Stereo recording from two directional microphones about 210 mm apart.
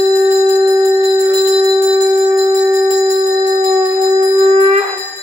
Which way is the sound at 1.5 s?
20° right (ahead or behind).